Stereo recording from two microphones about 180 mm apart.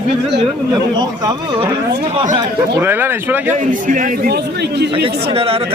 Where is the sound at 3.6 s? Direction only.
45° right (ahead or behind).